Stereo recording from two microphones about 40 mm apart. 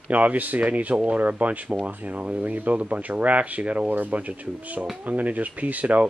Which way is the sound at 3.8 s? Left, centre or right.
Right.